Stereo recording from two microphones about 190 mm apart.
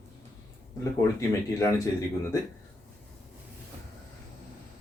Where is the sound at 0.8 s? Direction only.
15° left (ahead or behind).